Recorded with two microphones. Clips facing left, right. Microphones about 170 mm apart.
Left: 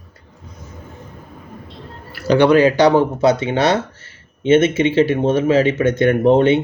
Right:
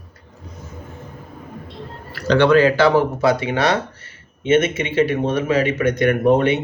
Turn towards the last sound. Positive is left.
turn(degrees=25)  # may be behind; listen again after turning